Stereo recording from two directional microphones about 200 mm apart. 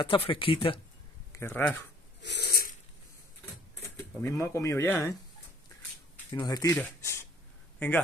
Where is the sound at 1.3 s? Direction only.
10° left (ahead or behind).